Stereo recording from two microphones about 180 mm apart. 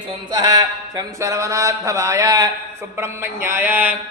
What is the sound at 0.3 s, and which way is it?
A man's voice, 20° right (ahead or behind).